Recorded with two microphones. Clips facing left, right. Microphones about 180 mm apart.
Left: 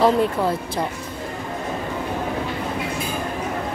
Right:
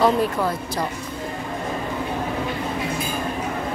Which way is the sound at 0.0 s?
25° left (ahead or behind).